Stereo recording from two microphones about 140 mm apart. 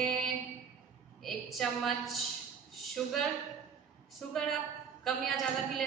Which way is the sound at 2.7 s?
Centre (ahead or behind).